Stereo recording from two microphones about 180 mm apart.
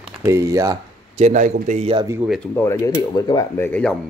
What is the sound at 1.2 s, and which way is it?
Speech, 40° right (ahead or behind).